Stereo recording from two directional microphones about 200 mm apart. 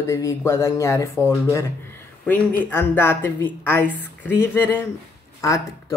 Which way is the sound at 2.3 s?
10° left (ahead or behind).